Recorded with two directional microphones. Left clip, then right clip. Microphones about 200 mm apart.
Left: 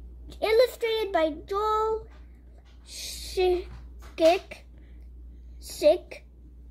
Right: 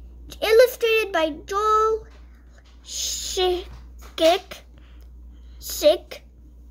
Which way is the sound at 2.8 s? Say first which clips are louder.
Right 10 dB; 20° right (ahead or behind).